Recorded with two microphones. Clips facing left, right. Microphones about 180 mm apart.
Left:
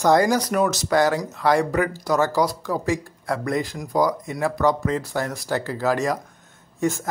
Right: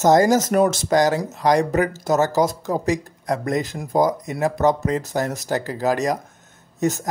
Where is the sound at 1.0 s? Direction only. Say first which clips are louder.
Even; 20° right (ahead or behind).